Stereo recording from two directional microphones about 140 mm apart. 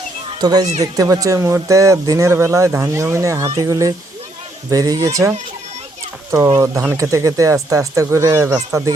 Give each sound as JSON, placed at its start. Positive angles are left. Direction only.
{"t": 0.3, "sound": "speech", "side_deg": -30}
{"t": 6.9, "sound": "speech", "side_deg": -25}